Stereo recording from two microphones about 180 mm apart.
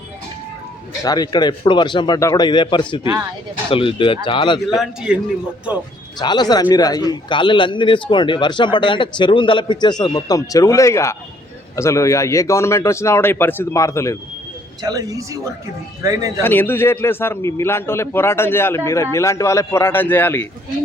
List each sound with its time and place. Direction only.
1.0 s a man's voice: 20° left (ahead or behind)
3.0 s speech: 20° right (ahead or behind)
3.7 s a man's voice: 30° left (ahead or behind)
4.8 s a man's voice: 5° right (ahead or behind)
6.1 s a man's voice: 25° left (ahead or behind)
14.8 s speech: 20° right (ahead or behind)
16.4 s speech: 10° left (ahead or behind)